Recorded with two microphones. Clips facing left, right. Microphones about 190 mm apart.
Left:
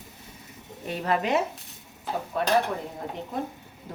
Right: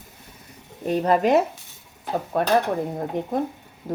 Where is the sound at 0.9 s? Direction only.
40° right (ahead or behind).